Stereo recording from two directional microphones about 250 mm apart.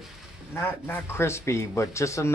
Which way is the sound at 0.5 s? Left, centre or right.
Centre.